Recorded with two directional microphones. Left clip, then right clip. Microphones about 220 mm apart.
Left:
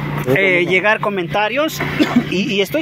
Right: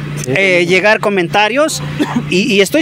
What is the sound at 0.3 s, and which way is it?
Speech, 40° right (ahead or behind).